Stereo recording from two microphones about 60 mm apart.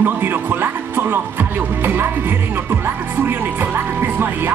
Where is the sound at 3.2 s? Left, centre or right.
Right.